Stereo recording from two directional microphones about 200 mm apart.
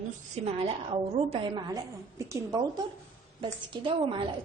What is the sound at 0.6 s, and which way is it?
A woman's voice, 30° right (ahead or behind).